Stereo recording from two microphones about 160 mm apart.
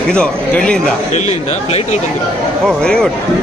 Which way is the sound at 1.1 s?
45° left (ahead or behind).